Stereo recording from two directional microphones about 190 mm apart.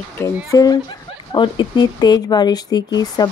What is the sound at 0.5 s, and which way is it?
Speech, 20° left (ahead or behind).